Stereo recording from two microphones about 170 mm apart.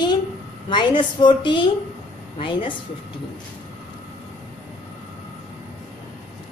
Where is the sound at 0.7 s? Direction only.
25° left (ahead or behind).